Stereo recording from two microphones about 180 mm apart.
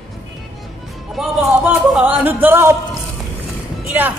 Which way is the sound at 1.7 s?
5° right (ahead or behind).